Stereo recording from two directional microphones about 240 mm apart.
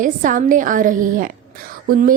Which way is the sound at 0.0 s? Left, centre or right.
Right.